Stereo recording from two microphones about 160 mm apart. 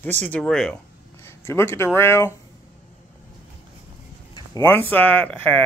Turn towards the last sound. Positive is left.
turn(degrees=10)  # may be behind; listen again after turning